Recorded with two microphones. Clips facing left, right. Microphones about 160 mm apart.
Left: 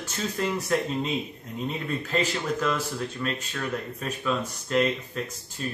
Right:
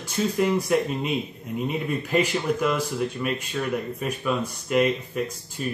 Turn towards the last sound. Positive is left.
turn(degrees=-10)  # may be behind; listen again after turning